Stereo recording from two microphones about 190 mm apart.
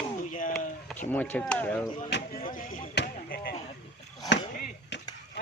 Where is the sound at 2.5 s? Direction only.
45° left (ahead or behind).